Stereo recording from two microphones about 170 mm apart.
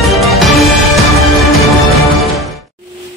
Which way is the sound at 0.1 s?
Centre (ahead or behind).